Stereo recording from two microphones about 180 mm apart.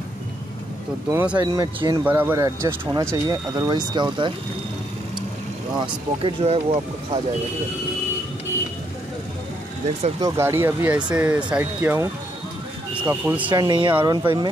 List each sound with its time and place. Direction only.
1.1 s speech: 5° right (ahead or behind)
1.4 s speech: 20° right (ahead or behind)
5.8 s speech: 30° right (ahead or behind)
10.2 s speech: 15° right (ahead or behind)
13.5 s speech: 25° right (ahead or behind)